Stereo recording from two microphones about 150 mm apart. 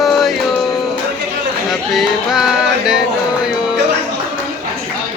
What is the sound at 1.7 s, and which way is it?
Music, centre (ahead or behind).